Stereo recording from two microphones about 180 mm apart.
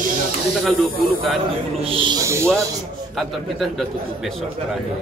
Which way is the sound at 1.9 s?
25° right (ahead or behind).